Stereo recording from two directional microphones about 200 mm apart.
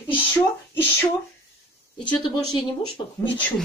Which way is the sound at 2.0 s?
25° left (ahead or behind).